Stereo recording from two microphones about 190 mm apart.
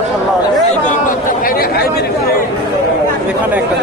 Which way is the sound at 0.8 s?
45° left (ahead or behind).